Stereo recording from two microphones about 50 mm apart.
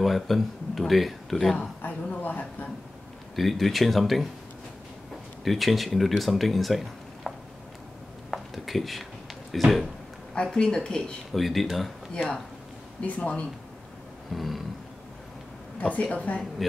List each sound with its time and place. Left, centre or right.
0.0 s speech: centre
2.2 s a sound: left
3.3 s speech: centre
5.4 s speech: centre
8.3 s a sound: centre
9.5 s speech: centre
10.3 s speech: centre
11.3 s speech: centre
12.1 s speech: centre
14.3 s speech: centre
15.8 s speech: left